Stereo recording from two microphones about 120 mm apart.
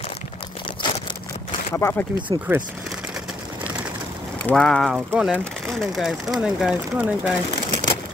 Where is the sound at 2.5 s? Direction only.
20° right (ahead or behind).